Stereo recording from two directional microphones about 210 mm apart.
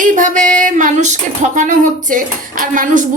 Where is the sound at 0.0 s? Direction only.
40° right (ahead or behind).